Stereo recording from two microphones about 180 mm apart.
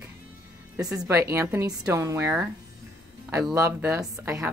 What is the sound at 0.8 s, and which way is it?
A woman's voice, 5° right (ahead or behind).